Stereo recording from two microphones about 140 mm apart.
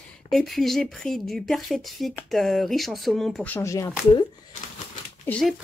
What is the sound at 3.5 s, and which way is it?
Speech, 20° left (ahead or behind).